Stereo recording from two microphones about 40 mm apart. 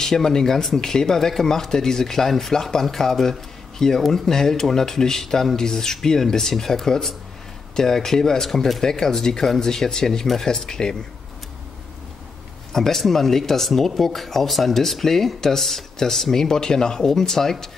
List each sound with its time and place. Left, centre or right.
0.0 s speech: centre
8.8 s speech: centre
12.7 s speech: centre